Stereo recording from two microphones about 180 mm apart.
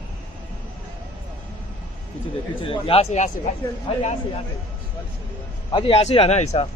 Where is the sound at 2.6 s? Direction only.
30° left (ahead or behind).